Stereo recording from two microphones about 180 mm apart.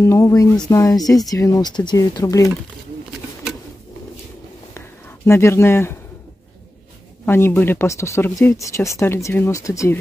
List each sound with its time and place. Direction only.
0.0 s speech: 15° left (ahead or behind)
4.7 s a sound: 15° left (ahead or behind)
7.2 s speech: 15° left (ahead or behind)